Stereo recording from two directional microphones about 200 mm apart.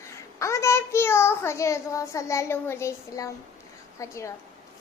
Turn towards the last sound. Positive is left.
turn(degrees=15)  # may be behind; listen again after turning